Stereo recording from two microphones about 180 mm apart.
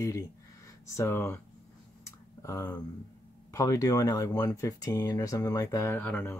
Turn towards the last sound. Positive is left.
turn(degrees=10)  # may be behind; listen again after turning